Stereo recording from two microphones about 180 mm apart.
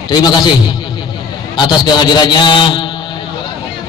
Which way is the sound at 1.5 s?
25° left (ahead or behind).